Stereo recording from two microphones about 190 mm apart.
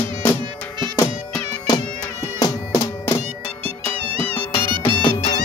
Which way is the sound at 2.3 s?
20° left (ahead or behind).